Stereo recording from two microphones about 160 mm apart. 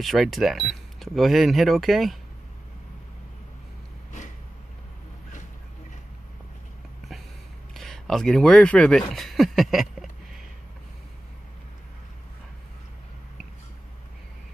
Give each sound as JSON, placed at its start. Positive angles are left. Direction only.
{"t": 0.0, "sound": "speech", "side_deg": 0}
{"t": 7.7, "sound": "speech", "side_deg": 0}